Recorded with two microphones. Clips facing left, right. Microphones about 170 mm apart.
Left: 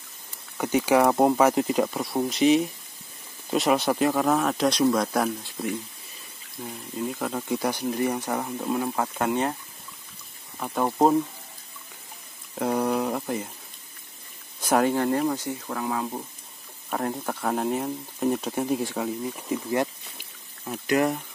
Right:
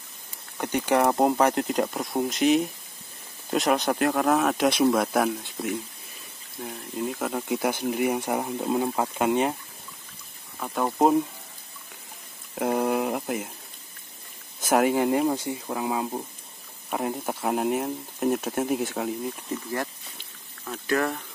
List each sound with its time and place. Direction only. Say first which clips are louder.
0.6 s speech: left 2 dB; 5° left (ahead or behind); by 9.6 s 15° right (ahead or behind)
10.6 s speech: left 1 dB; 5° left (ahead or behind)
12.5 s speech: even; 10° right (ahead or behind)
14.6 s speech: right 1 dB; centre (ahead or behind)
19.5 s a sound: left 7 dB; 15° left (ahead or behind)